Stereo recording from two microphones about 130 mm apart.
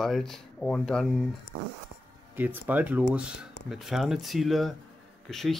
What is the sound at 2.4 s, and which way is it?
Speech, 15° right (ahead or behind).